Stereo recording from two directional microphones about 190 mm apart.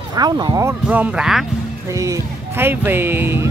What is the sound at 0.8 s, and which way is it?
Speech, 5° right (ahead or behind).